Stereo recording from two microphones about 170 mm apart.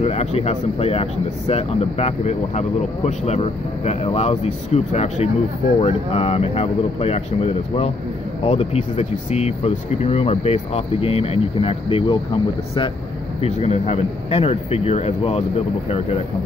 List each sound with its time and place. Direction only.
0.0 s speech: 40° left (ahead or behind)